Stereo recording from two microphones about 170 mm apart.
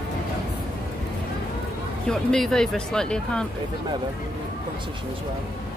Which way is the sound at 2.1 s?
5° left (ahead or behind).